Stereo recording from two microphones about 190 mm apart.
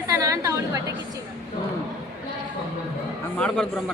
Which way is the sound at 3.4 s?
5° left (ahead or behind).